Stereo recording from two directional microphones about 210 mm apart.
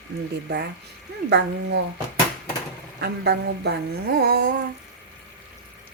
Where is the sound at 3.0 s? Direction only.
50° right (ahead or behind).